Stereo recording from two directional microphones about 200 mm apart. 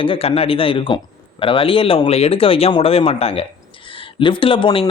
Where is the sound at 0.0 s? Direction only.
30° left (ahead or behind).